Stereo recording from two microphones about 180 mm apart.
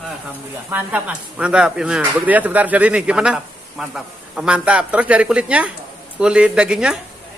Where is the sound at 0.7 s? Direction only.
10° right (ahead or behind).